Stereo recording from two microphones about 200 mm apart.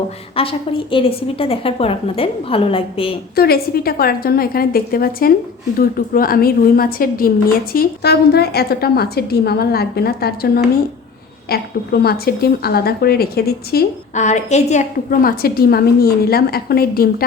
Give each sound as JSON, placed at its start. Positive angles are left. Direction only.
{"t": 0.3, "sound": "a woman's voice", "side_deg": 25}
{"t": 3.3, "sound": "a woman's voice", "side_deg": 50}
{"t": 14.2, "sound": "a woman's voice", "side_deg": 35}